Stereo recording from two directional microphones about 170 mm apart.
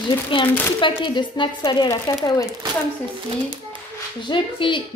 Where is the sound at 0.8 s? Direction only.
30° left (ahead or behind).